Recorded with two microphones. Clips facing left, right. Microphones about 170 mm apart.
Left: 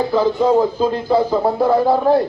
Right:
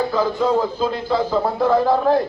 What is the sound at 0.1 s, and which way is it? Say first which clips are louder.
Speech: left 4 dB; 20° left (ahead or behind).